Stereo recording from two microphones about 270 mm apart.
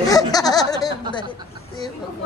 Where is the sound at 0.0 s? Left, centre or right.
Centre.